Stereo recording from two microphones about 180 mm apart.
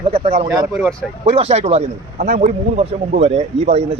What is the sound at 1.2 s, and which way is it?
Speech, 35° right (ahead or behind).